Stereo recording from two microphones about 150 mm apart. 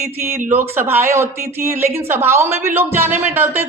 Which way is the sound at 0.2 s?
15° right (ahead or behind).